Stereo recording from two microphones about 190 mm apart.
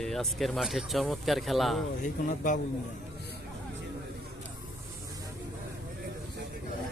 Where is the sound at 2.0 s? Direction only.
40° left (ahead or behind).